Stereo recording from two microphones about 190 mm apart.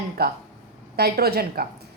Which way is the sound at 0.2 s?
55° right (ahead or behind).